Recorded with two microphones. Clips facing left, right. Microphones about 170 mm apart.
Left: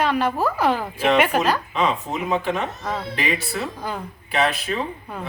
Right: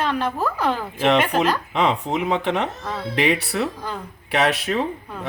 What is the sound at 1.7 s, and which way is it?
Speech, 70° right (ahead or behind).